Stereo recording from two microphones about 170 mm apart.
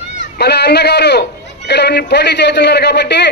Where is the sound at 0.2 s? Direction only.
80° left.